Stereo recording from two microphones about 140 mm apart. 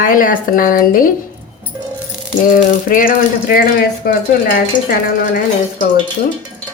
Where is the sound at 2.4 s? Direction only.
90° left.